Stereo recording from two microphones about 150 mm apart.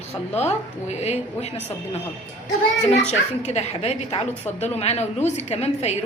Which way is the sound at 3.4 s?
50° left (ahead or behind).